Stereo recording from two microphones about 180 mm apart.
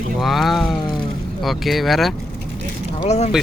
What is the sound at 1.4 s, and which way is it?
Speech, centre (ahead or behind).